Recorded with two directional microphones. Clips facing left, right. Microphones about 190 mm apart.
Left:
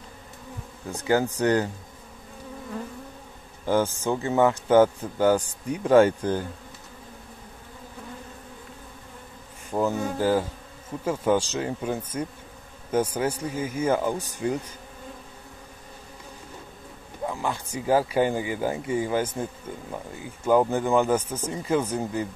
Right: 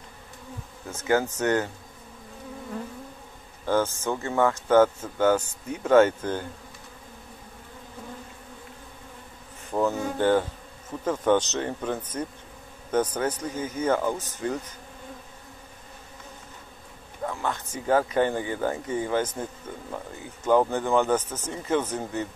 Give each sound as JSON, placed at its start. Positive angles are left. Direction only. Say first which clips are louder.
{"t": 1.1, "sound": "speech", "louder": "left 1 dB", "side_deg": 15}
{"t": 1.4, "sound": "speech", "louder": "left 2 dB", "side_deg": 35}
{"t": 3.6, "sound": "speech", "louder": "left 1 dB", "side_deg": 15}
{"t": 9.7, "sound": "speech", "louder": "even", "side_deg": 10}
{"t": 17.3, "sound": "speech", "louder": "left 1 dB", "side_deg": 10}
{"t": 20.4, "sound": "speech", "louder": "left 1 dB", "side_deg": 10}